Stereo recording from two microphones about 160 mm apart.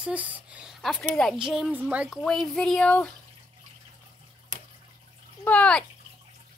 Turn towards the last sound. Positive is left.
turn(degrees=10)  # may be behind; listen again after turning